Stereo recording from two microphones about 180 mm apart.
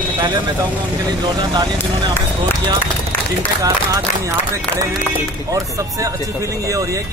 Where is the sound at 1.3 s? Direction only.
25° right (ahead or behind).